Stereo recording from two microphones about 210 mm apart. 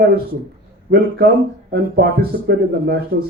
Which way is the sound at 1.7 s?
50° right (ahead or behind).